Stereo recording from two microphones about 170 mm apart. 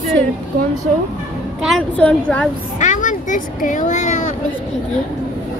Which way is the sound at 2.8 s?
50° left (ahead or behind).